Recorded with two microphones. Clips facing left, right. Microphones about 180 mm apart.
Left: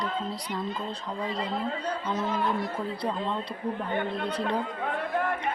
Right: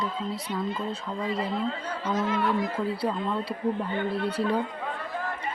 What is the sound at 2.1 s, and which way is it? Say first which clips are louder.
Speech: right 4 dB; 90° right.